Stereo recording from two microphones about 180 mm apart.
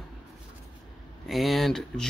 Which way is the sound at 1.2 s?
Centre (ahead or behind).